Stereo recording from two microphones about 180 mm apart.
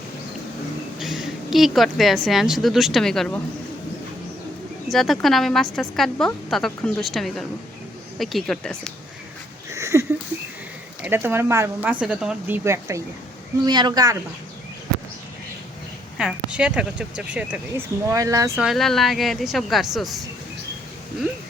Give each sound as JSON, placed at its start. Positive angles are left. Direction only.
{"t": 0.9, "sound": "a woman's voice", "side_deg": 0}
{"t": 4.9, "sound": "a woman's voice", "side_deg": 0}
{"t": 9.6, "sound": "a sound", "side_deg": -15}
{"t": 11.0, "sound": "speech", "side_deg": -10}
{"t": 16.1, "sound": "speech", "side_deg": -5}
{"t": 18.5, "sound": "a woman's voice", "side_deg": 0}